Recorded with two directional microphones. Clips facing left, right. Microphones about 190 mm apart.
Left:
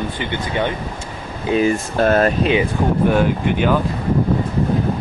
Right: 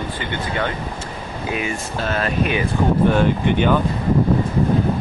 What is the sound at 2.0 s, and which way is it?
Speech, 45° left (ahead or behind).